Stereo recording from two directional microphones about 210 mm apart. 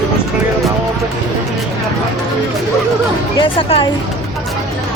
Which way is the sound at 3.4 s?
25° left (ahead or behind).